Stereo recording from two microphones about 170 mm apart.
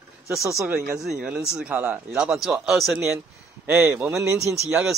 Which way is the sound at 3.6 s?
15° right (ahead or behind).